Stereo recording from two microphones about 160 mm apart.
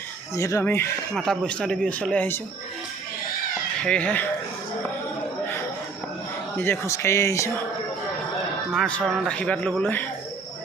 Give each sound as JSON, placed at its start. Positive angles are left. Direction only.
{"t": 0.3, "sound": "speech", "side_deg": 20}
{"t": 1.1, "sound": "speech", "side_deg": 5}
{"t": 3.8, "sound": "speech", "side_deg": 10}
{"t": 6.6, "sound": "speech", "side_deg": 15}
{"t": 8.7, "sound": "speech", "side_deg": 5}